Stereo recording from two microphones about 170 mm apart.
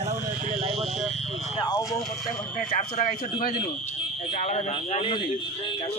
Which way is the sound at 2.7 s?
55° left (ahead or behind).